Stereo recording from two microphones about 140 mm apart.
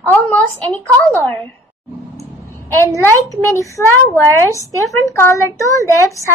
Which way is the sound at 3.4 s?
20° left (ahead or behind).